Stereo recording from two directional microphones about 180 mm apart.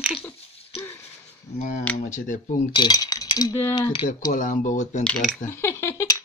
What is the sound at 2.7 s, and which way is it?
Speech, 25° left (ahead or behind).